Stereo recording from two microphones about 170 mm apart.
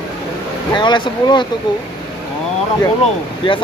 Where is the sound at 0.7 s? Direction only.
25° left (ahead or behind).